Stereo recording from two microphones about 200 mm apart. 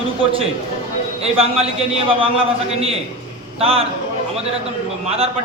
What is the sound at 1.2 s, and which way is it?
A man's voice, 30° right (ahead or behind).